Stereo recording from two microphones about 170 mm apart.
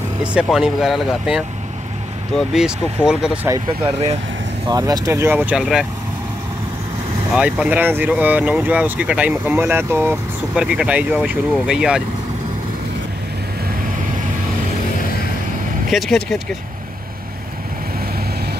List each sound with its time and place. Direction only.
0.2 s speech: 5° right (ahead or behind)
2.5 s speech: 5° right (ahead or behind)
4.6 s speech: 20° right (ahead or behind); by 5.9 s centre (ahead or behind)
7.3 s speech: 5° right (ahead or behind)
15.9 s speech: centre (ahead or behind)